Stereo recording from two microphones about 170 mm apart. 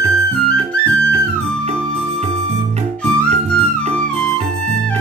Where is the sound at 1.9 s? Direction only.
35° right (ahead or behind).